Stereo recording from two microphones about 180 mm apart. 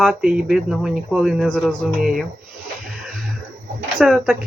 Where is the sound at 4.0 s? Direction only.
Centre (ahead or behind).